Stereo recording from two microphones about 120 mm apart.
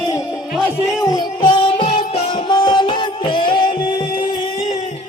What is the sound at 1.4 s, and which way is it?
Music, 45° left (ahead or behind).